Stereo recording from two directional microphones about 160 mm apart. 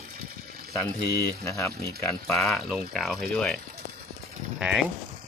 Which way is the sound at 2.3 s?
Centre (ahead or behind).